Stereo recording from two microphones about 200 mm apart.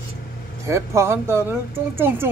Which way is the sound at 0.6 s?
15° right (ahead or behind).